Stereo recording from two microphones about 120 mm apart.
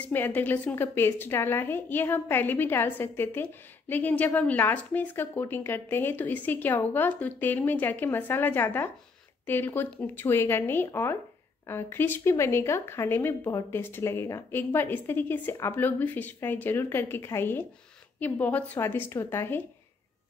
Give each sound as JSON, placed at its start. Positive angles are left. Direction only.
{"t": 0.0, "sound": "a woman's voice", "side_deg": 15}